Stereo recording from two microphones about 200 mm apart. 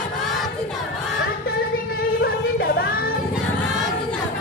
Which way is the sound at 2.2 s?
50° left (ahead or behind).